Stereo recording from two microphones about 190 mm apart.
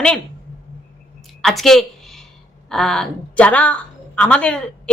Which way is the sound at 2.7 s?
5° left (ahead or behind).